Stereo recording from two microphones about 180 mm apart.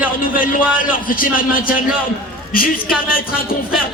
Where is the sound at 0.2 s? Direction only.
50° left (ahead or behind).